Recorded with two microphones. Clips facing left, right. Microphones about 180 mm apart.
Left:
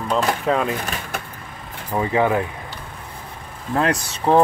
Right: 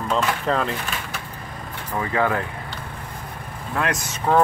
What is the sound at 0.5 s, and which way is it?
Speech, 10° left (ahead or behind).